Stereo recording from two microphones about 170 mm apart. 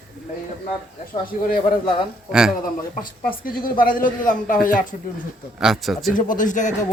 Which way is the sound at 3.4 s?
55° left (ahead or behind).